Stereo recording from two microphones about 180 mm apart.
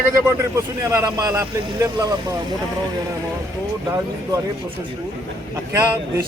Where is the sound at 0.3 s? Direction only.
15° right (ahead or behind).